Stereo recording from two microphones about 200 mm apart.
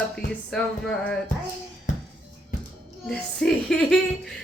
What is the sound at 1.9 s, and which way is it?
Music, 40° left (ahead or behind).